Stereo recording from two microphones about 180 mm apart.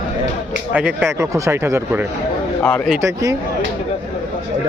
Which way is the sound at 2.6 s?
5° left (ahead or behind).